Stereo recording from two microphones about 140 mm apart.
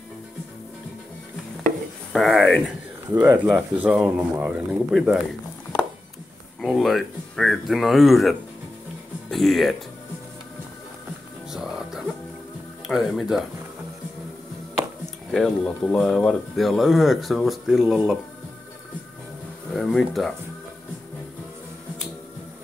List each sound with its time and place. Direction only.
2.1 s speech: centre (ahead or behind)
3.1 s speech: 20° right (ahead or behind)
6.6 s speech: centre (ahead or behind)
12.8 s speech: centre (ahead or behind)
15.3 s speech: 5° left (ahead or behind)
19.7 s speech: centre (ahead or behind)